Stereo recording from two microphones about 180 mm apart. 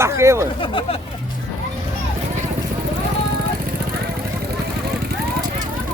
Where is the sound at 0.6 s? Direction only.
30° left (ahead or behind).